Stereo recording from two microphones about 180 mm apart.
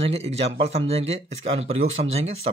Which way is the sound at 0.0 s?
35° right (ahead or behind).